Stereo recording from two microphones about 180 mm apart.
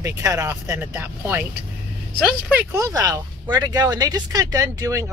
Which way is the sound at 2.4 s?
10° right (ahead or behind).